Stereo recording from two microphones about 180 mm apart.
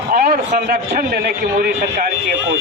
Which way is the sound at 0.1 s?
55° right (ahead or behind).